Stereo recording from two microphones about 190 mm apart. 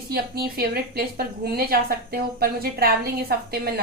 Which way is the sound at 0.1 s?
55° right (ahead or behind).